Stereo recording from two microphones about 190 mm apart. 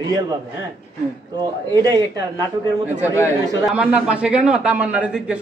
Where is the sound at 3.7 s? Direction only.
5° right (ahead or behind).